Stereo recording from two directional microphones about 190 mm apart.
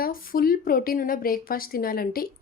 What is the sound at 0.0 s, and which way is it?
Speech, 50° left (ahead or behind).